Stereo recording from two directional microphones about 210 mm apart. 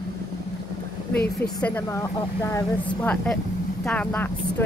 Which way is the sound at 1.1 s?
50° left (ahead or behind).